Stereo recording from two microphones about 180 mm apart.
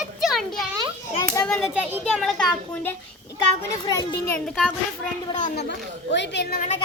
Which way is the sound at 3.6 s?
15° left (ahead or behind).